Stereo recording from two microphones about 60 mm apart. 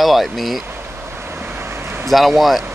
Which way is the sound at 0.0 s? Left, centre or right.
Centre.